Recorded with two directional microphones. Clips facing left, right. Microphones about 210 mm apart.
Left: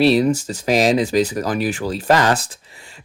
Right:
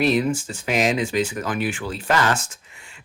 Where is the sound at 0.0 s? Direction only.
35° left (ahead or behind).